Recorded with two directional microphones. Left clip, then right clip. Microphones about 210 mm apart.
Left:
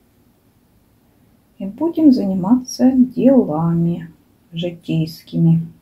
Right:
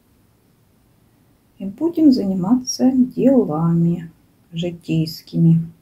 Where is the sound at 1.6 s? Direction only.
Centre (ahead or behind).